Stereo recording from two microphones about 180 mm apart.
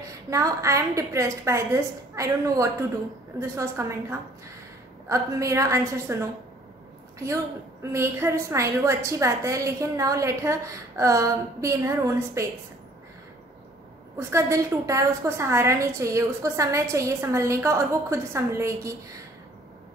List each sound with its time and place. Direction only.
0.0 s a woman's voice: 20° right (ahead or behind)
7.8 s a woman's voice: 15° right (ahead or behind)
14.1 s a woman's voice: 15° right (ahead or behind)